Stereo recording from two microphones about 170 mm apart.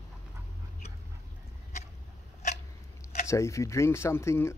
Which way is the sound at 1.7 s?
45° left (ahead or behind).